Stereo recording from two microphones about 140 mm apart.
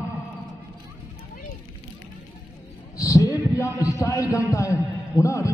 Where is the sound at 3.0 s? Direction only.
25° left (ahead or behind).